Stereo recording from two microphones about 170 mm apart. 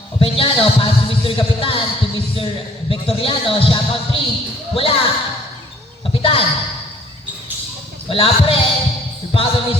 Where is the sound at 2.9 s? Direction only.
35° left (ahead or behind).